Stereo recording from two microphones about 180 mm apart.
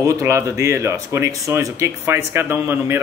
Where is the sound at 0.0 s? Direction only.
15° right (ahead or behind).